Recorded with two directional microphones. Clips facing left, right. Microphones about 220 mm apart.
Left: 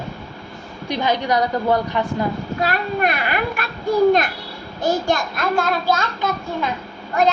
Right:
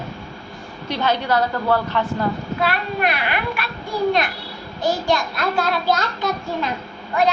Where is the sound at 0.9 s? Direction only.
15° left (ahead or behind).